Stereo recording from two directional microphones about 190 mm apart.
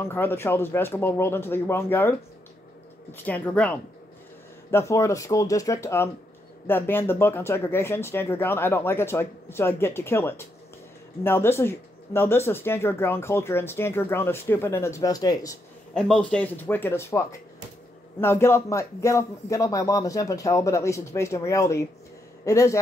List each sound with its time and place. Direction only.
0.0 s speech: 10° left (ahead or behind)
15.9 s a man's voice: 5° left (ahead or behind)